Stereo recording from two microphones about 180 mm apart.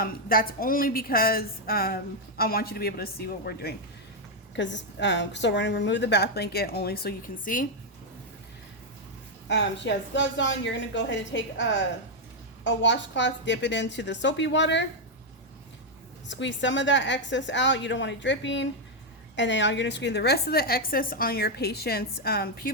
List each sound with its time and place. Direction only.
0.0 s a woman's voice: 55° left (ahead or behind)
4.5 s a woman's voice: 85° left; by 7.7 s 50° left (ahead or behind)
9.5 s a woman's voice: 80° left
16.3 s a woman's voice: 85° left; by 22.7 s 55° left (ahead or behind)